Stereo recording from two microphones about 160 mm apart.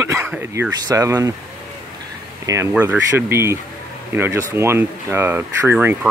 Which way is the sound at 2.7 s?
10° right (ahead or behind).